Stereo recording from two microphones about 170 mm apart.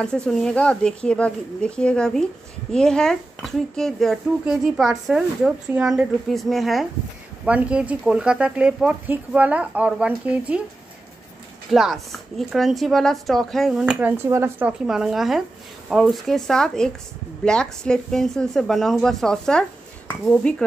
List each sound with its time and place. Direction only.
0.0 s speech: 5° left (ahead or behind)
11.7 s speech: centre (ahead or behind)